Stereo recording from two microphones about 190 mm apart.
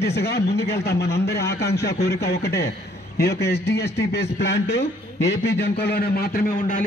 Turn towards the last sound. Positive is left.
turn(degrees=45)  # may be behind; listen again after turning